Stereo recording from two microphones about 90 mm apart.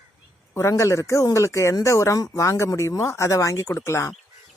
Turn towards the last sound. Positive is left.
turn(degrees=30)  # may be behind; listen again after turning